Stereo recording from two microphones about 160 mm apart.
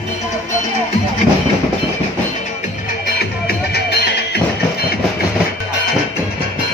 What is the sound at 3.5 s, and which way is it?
Music, 85° left.